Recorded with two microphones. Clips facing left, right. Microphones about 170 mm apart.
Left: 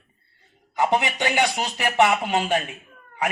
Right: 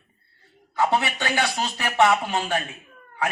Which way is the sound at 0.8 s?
15° left (ahead or behind).